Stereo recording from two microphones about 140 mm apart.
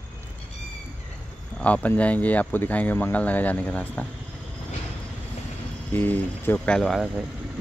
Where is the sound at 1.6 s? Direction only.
10° left (ahead or behind).